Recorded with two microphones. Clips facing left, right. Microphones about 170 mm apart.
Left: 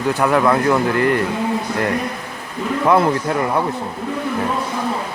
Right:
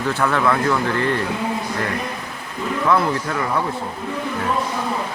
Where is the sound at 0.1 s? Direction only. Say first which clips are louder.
Left 4 dB; 15° left (ahead or behind).